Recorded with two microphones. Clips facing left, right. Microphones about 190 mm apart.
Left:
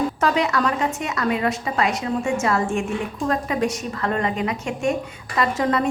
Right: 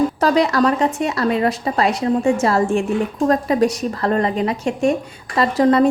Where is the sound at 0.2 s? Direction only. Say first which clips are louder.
Right 5 dB; 35° right (ahead or behind).